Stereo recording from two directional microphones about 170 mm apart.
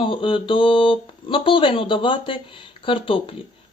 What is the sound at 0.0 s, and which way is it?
Speech, 30° left (ahead or behind).